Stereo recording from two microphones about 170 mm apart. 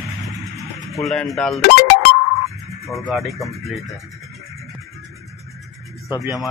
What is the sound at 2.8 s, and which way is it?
Speech, centre (ahead or behind).